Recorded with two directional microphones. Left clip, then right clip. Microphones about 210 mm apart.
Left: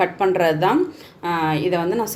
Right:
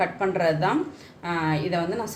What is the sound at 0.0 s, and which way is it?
A woman's voice, 40° left (ahead or behind).